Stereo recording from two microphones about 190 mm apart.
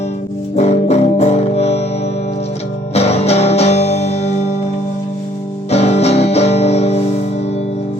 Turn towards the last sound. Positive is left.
turn(degrees=35)  # may be behind; listen again after turning